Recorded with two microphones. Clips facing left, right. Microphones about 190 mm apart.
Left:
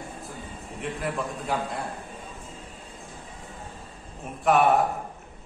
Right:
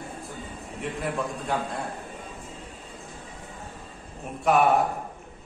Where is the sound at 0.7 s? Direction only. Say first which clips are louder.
Right 1 dB; centre (ahead or behind).